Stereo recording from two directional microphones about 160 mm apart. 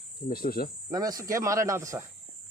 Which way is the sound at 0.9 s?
20° right (ahead or behind).